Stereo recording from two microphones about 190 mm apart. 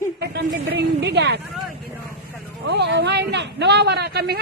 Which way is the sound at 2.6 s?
65° right (ahead or behind).